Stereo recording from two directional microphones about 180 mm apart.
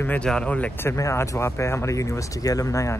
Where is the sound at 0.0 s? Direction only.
10° left (ahead or behind).